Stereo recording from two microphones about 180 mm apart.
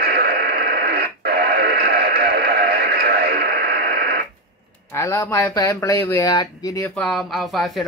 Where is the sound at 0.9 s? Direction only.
60° right (ahead or behind).